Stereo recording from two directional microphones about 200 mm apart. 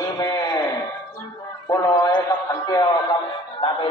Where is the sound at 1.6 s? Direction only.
20° left (ahead or behind).